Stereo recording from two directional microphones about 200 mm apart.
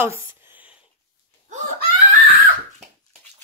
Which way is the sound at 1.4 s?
35° right (ahead or behind).